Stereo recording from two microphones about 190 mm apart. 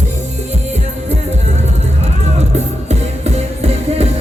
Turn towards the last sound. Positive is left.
turn(degrees=-35)  # may be behind; listen again after turning